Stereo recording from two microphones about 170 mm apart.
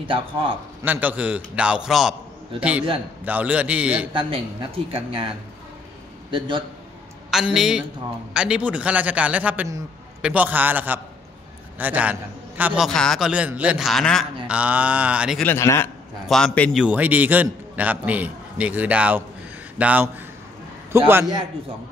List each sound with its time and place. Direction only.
0.8 s a man's voice: 10° right (ahead or behind)
3.3 s a man's voice: 10° right (ahead or behind)
4.1 s speech: 30° right (ahead or behind)
6.3 s a man's voice: 30° right (ahead or behind)
7.2 s a man's voice: centre (ahead or behind)
15.4 s a man's voice: 15° left (ahead or behind)
16.3 s a man's voice: 5° left (ahead or behind)
16.8 s a man's voice: 10° right (ahead or behind)
21.1 s a man's voice: 15° right (ahead or behind)